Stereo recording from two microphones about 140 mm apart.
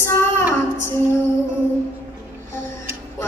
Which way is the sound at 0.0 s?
15° left (ahead or behind).